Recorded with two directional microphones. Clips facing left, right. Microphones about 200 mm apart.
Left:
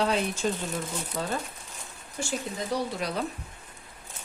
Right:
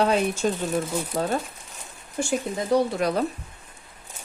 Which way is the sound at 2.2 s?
50° right (ahead or behind).